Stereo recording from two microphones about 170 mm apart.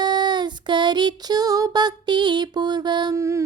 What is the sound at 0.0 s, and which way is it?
Child singing, 25° right (ahead or behind).